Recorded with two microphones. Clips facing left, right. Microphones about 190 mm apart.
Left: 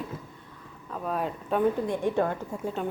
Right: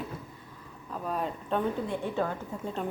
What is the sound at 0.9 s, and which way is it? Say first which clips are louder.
Speech: left 2 dB; centre (ahead or behind).